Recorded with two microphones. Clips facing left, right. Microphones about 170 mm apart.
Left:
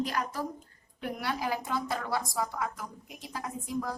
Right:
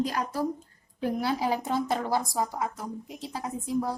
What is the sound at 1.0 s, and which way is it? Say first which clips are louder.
A woman's voice: right 6 dB; 30° right (ahead or behind).